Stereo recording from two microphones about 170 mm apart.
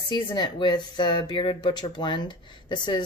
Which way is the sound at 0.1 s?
25° left (ahead or behind).